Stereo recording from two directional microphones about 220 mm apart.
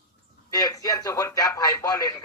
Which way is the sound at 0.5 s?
15° left (ahead or behind).